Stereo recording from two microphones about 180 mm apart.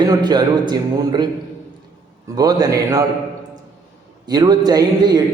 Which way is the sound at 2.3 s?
20° right (ahead or behind).